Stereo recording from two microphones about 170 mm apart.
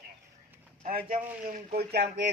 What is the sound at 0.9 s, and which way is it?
Speech, 60° right (ahead or behind).